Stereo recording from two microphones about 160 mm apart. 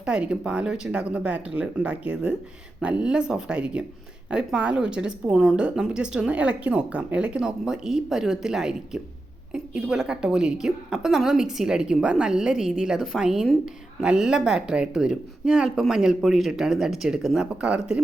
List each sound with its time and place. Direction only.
0.0 s a woman's voice: 5° right (ahead or behind)